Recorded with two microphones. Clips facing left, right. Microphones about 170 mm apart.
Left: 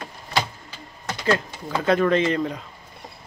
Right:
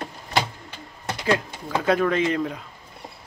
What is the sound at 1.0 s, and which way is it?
Speech, 10° right (ahead or behind).